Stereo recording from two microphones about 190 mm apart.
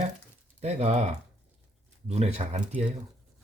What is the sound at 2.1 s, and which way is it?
Speech, 35° right (ahead or behind).